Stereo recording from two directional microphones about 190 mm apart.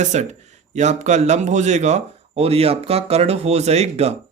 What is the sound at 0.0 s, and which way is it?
Speech, 35° right (ahead or behind).